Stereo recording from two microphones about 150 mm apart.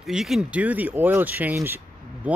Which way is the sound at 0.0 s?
Centre (ahead or behind).